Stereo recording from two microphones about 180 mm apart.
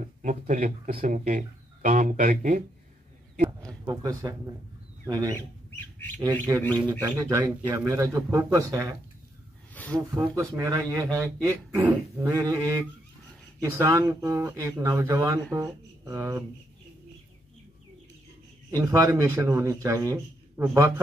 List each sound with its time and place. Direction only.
0.0 s speech: 45° right (ahead or behind)
3.8 s speech: 20° right (ahead or behind)
9.9 s speech: 15° right (ahead or behind)
18.7 s speech: 15° right (ahead or behind)